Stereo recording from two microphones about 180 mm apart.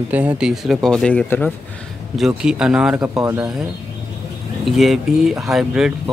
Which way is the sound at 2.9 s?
15° right (ahead or behind).